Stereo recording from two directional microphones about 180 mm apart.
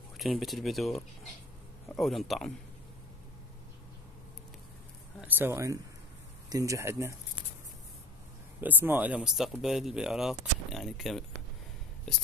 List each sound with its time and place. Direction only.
0.2 s speech: centre (ahead or behind)
5.2 s speech: 10° right (ahead or behind)
8.5 s speech: 10° right (ahead or behind)